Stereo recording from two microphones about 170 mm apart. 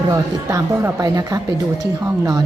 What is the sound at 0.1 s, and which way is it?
A woman's voice, 20° right (ahead or behind).